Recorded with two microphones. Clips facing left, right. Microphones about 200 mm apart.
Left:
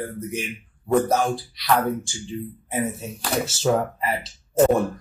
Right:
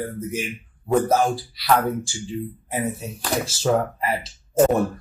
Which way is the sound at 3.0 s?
Centre (ahead or behind).